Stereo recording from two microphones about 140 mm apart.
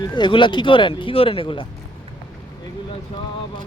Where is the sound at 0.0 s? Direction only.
35° left (ahead or behind).